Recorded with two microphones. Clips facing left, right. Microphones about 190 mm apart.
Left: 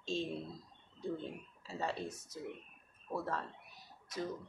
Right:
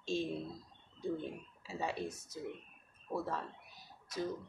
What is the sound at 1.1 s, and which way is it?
Speech, 10° right (ahead or behind).